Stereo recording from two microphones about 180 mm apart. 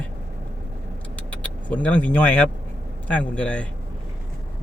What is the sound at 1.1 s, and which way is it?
Vehicle, 10° left (ahead or behind).